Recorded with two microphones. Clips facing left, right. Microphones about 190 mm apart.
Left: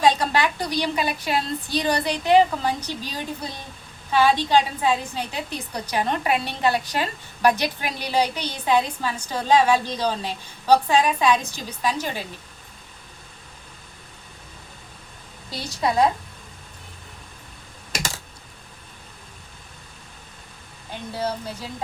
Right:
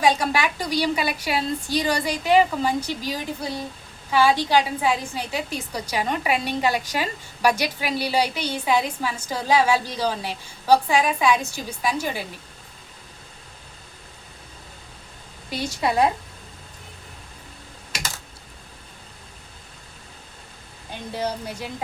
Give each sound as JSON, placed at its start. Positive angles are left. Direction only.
{"t": 0.0, "sound": "a woman's voice", "side_deg": -10}
{"t": 15.4, "sound": "a woman's voice", "side_deg": -15}
{"t": 21.2, "sound": "a woman's voice", "side_deg": -15}